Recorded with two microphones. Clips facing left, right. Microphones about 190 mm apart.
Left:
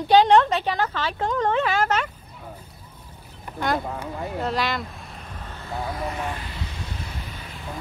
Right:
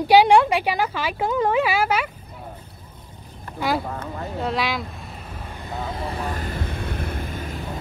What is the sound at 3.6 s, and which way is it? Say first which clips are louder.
Speech: right 1 dB; 5° right (ahead or behind).